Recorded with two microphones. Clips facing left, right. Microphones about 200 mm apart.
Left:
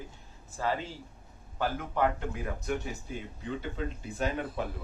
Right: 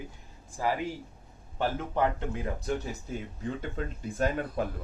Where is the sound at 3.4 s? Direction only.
45° right (ahead or behind).